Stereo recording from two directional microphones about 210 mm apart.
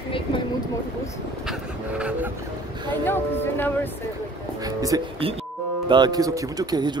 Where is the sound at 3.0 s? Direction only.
10° left (ahead or behind).